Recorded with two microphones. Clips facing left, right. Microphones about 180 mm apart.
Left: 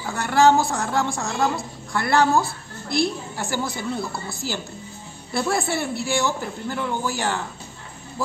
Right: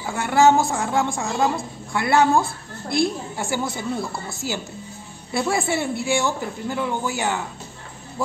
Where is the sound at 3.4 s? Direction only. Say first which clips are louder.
Right 1 dB; 25° right (ahead or behind).